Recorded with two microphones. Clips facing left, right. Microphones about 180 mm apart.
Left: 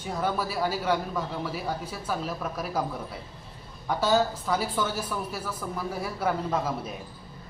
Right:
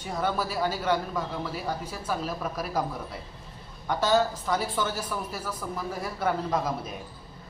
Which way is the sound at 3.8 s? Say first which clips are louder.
Even; 5° left (ahead or behind).